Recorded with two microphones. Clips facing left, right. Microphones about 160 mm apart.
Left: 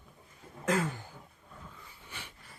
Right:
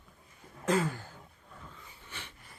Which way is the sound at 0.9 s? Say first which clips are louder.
Right 2 dB; 20° left (ahead or behind).